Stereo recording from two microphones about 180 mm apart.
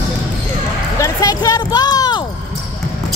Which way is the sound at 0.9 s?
20° left (ahead or behind).